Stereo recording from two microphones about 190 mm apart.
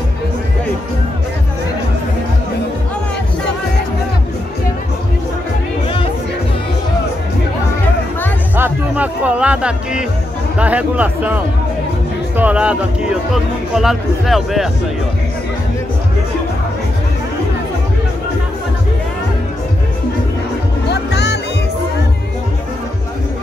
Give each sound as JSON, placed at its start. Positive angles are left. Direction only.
{"t": 8.5, "sound": "music", "side_deg": -10}
{"t": 10.6, "sound": "speech", "side_deg": -5}
{"t": 20.9, "sound": "music", "side_deg": 60}